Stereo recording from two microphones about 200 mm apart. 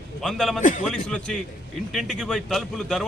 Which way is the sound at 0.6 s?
40° left (ahead or behind).